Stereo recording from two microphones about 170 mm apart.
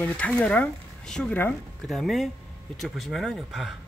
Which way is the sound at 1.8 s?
Centre (ahead or behind).